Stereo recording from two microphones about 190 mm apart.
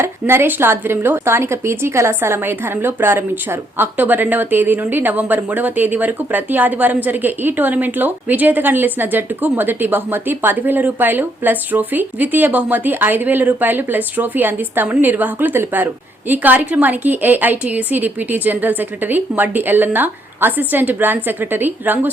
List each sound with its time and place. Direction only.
0.0 s a woman's voice: 10° right (ahead or behind)